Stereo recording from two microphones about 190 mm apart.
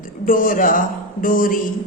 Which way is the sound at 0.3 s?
45° left (ahead or behind).